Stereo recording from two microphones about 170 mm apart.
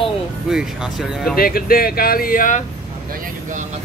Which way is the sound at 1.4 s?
60° left (ahead or behind).